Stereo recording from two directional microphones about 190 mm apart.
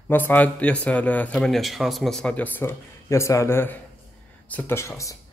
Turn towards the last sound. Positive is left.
turn(degrees=15)  # may be behind; listen again after turning